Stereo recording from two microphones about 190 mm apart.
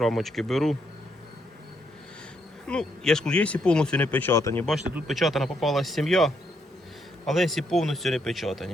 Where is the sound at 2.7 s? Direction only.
5° left (ahead or behind).